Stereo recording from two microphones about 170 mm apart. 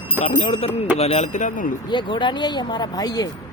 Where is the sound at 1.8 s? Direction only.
30° left (ahead or behind).